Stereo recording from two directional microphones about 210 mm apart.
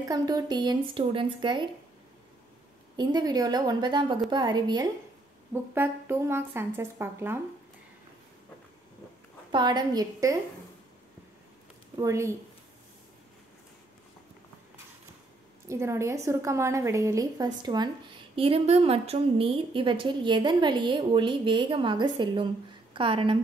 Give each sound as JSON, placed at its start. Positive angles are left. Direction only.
{"t": 0.1, "sound": "a woman's voice", "side_deg": -20}
{"t": 3.0, "sound": "a woman's voice", "side_deg": -20}
{"t": 9.5, "sound": "a woman's voice", "side_deg": -20}
{"t": 12.0, "sound": "speech", "side_deg": -15}
{"t": 15.7, "sound": "a woman's voice", "side_deg": -15}